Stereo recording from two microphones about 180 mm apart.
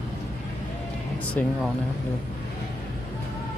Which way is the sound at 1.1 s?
5° left (ahead or behind).